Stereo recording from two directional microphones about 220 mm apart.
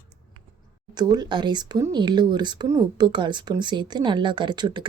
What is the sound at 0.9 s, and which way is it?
Speech, 20° right (ahead or behind).